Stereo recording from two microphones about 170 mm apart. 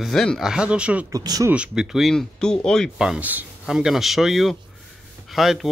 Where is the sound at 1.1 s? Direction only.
20° right (ahead or behind).